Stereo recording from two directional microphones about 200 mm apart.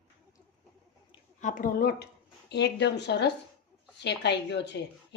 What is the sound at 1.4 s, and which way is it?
Speech, 40° left (ahead or behind).